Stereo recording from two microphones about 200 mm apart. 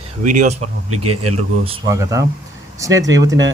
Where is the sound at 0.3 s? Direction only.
35° right (ahead or behind).